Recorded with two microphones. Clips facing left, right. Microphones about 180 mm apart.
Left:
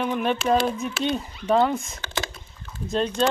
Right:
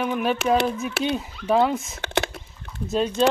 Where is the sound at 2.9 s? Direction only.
5° right (ahead or behind).